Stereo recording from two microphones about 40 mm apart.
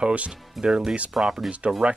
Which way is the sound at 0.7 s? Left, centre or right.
Centre.